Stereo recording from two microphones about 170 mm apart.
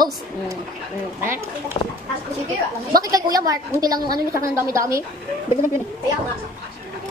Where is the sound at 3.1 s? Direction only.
20° right (ahead or behind).